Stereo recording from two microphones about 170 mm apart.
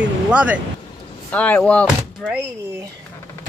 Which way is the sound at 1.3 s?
10° left (ahead or behind).